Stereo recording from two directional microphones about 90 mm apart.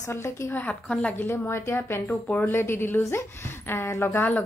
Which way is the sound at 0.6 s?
10° left (ahead or behind).